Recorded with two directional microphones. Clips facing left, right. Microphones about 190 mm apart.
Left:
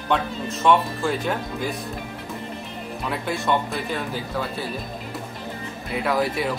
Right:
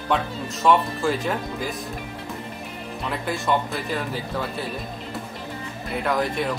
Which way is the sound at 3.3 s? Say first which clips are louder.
Even; centre (ahead or behind).